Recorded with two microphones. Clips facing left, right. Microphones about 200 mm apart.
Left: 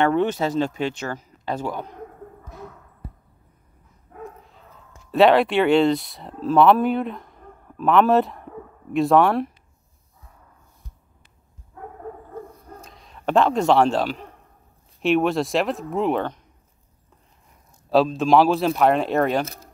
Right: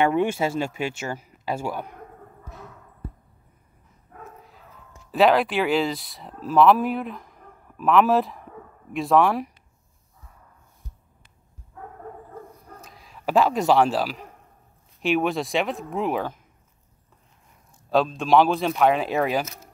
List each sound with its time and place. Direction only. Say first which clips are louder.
0.0 s speech: left 1 dB; 10° right (ahead or behind)
5.1 s speech: left 3 dB; centre (ahead or behind)
12.8 s speech: left 3 dB; 5° right (ahead or behind)
17.8 s speech: left 4 dB; centre (ahead or behind)
19.4 s speech: left 5 dB; 35° left (ahead or behind)